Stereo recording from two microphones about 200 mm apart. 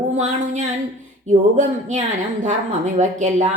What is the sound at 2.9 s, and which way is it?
Speech, 35° right (ahead or behind).